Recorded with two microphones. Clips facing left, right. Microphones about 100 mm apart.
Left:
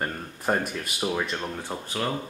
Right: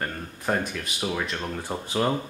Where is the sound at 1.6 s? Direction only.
15° right (ahead or behind).